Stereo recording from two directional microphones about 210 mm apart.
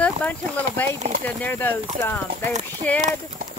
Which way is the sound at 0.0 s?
5° left (ahead or behind).